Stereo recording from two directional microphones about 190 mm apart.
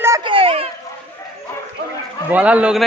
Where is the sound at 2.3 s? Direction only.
5° right (ahead or behind).